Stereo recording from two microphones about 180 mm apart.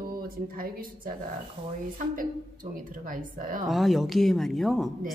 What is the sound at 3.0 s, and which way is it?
Speech, 50° right (ahead or behind).